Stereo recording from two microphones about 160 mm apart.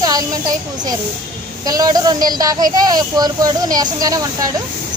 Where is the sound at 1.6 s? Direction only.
25° right (ahead or behind).